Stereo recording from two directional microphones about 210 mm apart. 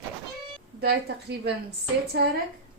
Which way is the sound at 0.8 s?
50° right (ahead or behind).